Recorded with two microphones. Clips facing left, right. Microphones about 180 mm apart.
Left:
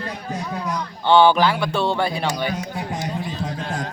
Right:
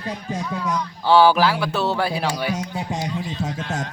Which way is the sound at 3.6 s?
35° left (ahead or behind).